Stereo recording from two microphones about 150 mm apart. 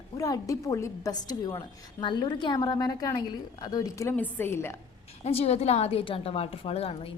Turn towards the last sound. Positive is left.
turn(degrees=40)  # may be behind; listen again after turning